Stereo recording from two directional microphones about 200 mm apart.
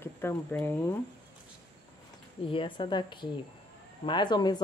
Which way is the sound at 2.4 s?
25° left (ahead or behind).